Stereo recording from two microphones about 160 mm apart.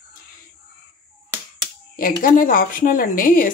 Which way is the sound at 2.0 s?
60° left (ahead or behind).